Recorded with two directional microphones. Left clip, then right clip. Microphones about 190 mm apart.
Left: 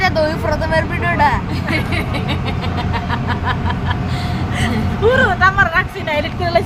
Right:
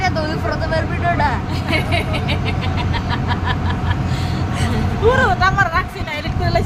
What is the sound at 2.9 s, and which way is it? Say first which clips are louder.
Vehicle: left 1 dB; 10° left (ahead or behind).